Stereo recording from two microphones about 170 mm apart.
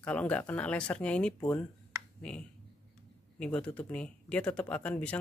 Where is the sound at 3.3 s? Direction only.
5° left (ahead or behind).